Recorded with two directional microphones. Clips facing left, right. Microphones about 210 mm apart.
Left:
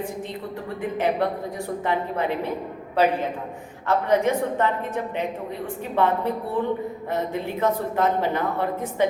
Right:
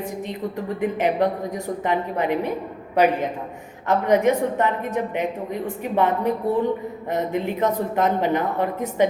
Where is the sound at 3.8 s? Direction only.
15° right (ahead or behind).